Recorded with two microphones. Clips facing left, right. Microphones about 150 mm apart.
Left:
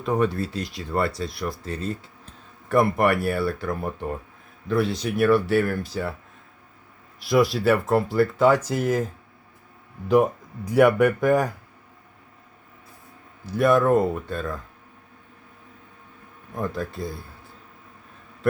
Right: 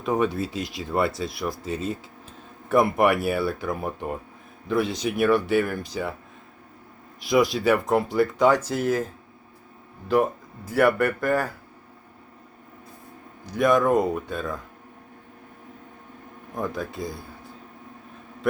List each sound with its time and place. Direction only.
0.0 s speech: centre (ahead or behind)
7.3 s speech: centre (ahead or behind)
10.7 s speech: centre (ahead or behind)
13.4 s speech: 5° left (ahead or behind)
16.6 s speech: centre (ahead or behind)